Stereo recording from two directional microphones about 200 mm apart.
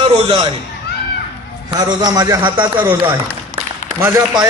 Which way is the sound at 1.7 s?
20° right (ahead or behind).